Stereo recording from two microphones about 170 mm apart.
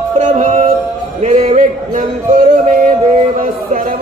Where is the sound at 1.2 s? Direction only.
45° right (ahead or behind).